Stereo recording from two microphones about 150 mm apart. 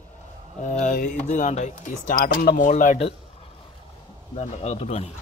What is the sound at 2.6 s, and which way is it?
Speech, 60° left (ahead or behind).